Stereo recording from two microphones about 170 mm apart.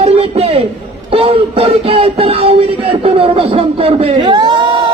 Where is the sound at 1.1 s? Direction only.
35° right (ahead or behind).